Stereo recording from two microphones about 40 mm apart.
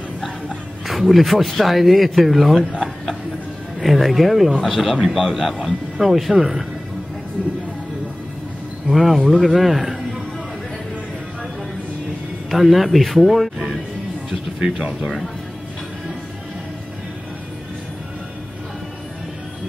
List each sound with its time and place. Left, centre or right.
0.8 s speech: centre
3.8 s speech: centre
8.8 s speech: centre
12.4 s speech: centre
14.6 s speech: centre